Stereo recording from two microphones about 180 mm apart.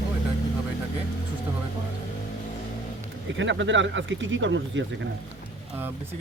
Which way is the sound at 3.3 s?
90° right.